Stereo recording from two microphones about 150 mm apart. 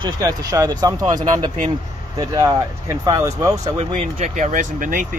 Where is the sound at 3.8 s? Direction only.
50° right (ahead or behind).